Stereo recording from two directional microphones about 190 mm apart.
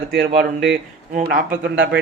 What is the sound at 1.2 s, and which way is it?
Speech, 50° right (ahead or behind).